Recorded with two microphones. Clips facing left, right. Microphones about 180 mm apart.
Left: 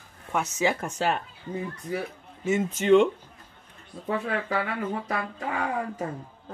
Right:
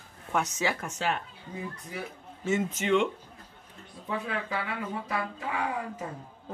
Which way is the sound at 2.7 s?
35° left (ahead or behind).